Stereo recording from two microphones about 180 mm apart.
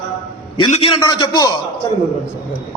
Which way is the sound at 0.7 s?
30° left (ahead or behind).